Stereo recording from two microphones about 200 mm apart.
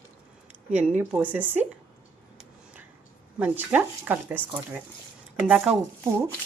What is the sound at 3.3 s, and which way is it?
A woman's voice, 10° right (ahead or behind).